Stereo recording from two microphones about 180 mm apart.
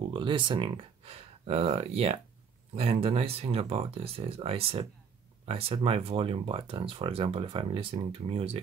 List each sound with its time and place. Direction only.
0.1 s speech: 25° right (ahead or behind)